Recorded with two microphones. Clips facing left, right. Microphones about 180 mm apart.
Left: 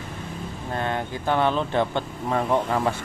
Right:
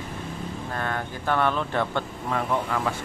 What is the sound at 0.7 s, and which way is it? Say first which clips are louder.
Speech: left 4 dB; 20° left (ahead or behind).